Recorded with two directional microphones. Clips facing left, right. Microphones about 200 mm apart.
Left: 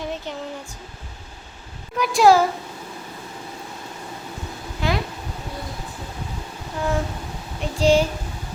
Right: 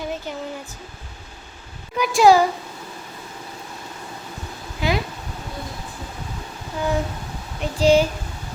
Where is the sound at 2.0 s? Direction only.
Centre (ahead or behind).